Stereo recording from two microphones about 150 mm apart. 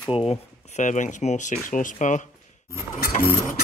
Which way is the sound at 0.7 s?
55° left (ahead or behind).